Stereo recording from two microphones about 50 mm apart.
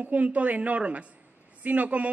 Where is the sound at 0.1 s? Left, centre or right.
Right.